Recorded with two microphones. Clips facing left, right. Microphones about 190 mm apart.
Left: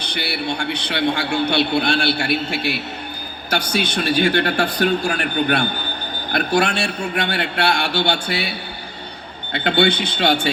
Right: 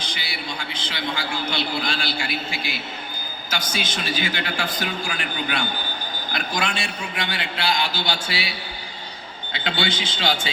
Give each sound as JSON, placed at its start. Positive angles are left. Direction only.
{"t": 0.0, "sound": "a man's voice", "side_deg": 65}